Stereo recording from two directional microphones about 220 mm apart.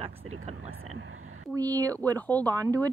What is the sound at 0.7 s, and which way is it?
Speech, 70° right (ahead or behind).